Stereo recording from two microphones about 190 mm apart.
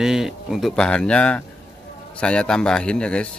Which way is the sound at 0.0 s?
Centre (ahead or behind).